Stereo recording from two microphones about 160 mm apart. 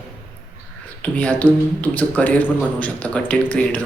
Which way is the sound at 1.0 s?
10° left (ahead or behind).